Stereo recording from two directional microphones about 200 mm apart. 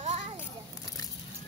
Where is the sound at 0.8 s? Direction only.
20° left (ahead or behind).